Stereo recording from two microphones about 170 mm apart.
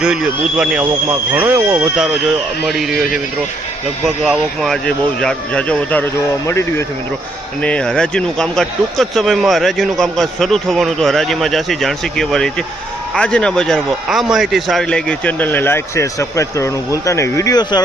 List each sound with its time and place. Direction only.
0.0 s a man's voice: 5° right (ahead or behind)
4.0 s a man's voice: centre (ahead or behind); by 17.8 s 25° left (ahead or behind)